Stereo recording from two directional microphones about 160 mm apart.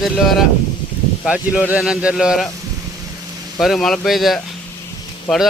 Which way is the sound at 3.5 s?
Centre (ahead or behind).